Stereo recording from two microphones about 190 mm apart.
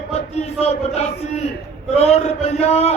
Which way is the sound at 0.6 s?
35° left (ahead or behind).